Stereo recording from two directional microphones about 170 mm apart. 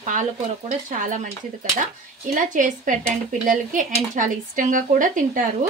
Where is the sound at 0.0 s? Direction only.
50° right (ahead or behind).